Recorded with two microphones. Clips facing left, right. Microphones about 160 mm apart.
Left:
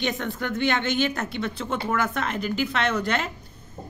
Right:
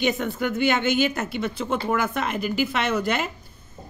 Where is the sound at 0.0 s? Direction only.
5° right (ahead or behind).